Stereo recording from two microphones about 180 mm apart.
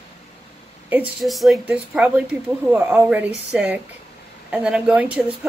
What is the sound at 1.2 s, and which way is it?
Speech, centre (ahead or behind).